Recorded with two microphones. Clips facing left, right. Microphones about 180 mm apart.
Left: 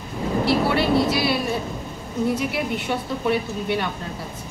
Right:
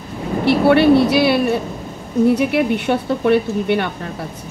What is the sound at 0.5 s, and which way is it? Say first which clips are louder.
A woman's voice: right 10 dB; 65° right (ahead or behind).